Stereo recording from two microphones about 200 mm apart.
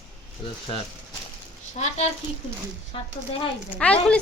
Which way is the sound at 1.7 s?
35° left (ahead or behind).